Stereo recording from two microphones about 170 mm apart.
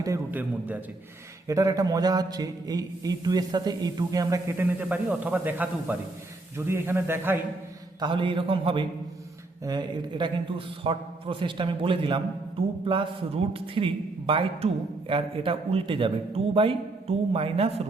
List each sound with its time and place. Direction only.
0.0 s a man's voice: 15° right (ahead or behind)
1.5 s mantra: 20° right (ahead or behind)
6.7 s a man's voice: 15° right (ahead or behind)
8.0 s mantra: 30° right (ahead or behind)
10.8 s a man's voice: 30° right (ahead or behind)